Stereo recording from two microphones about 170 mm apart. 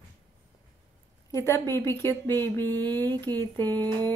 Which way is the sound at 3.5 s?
10° left (ahead or behind).